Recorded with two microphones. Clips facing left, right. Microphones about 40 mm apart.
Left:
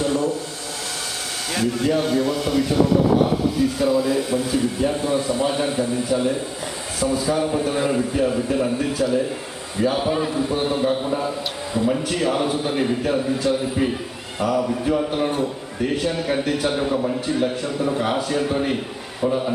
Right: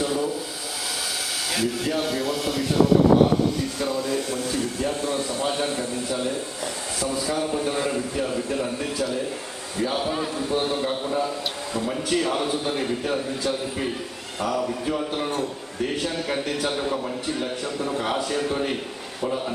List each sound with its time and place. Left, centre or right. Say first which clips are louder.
0.0 s a sound: left 4 dB; centre
1.5 s a man's voice: left 5 dB; centre
12.0 s a man's voice: left 2 dB; centre